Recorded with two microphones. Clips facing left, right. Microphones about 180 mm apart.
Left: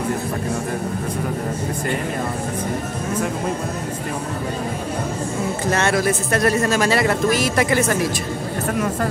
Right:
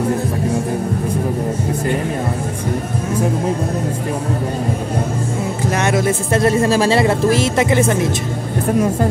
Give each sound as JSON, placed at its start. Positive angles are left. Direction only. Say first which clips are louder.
{"t": 5.7, "sound": "speech", "louder": "right 2 dB", "side_deg": -15}